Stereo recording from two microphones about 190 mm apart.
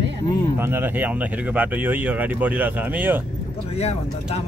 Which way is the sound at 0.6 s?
10° right (ahead or behind).